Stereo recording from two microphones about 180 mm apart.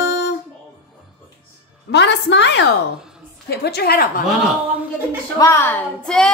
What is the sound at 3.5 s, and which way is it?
Speech, 65° left (ahead or behind).